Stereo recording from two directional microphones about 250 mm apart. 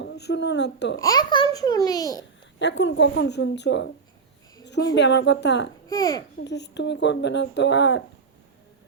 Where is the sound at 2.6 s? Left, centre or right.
Left.